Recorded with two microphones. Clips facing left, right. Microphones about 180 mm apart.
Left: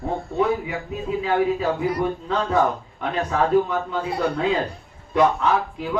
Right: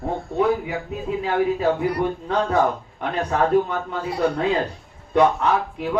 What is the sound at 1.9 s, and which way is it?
Speech, 60° right (ahead or behind).